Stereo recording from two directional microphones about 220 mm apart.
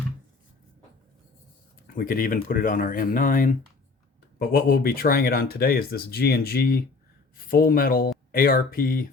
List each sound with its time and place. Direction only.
1.9 s speech: 40° left (ahead or behind)